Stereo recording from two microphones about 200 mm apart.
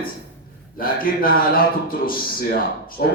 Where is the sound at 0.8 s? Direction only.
45° left (ahead or behind).